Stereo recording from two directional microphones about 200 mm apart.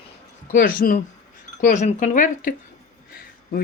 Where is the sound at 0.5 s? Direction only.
45° left (ahead or behind).